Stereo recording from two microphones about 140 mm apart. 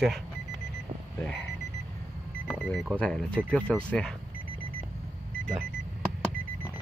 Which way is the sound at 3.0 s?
10° left (ahead or behind).